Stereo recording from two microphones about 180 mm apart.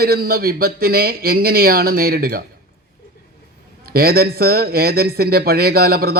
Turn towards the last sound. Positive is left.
turn(degrees=-55)  # may be behind; listen again after turning